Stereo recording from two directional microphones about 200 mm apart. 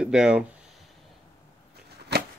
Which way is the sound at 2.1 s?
55° right (ahead or behind).